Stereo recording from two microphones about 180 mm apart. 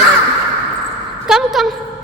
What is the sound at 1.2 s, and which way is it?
Speech, centre (ahead or behind).